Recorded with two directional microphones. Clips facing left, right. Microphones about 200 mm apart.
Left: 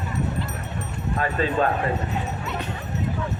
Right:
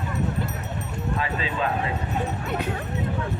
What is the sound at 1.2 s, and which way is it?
Speech, 50° left (ahead or behind).